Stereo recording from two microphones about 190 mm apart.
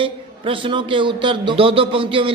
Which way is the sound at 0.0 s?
25° right (ahead or behind).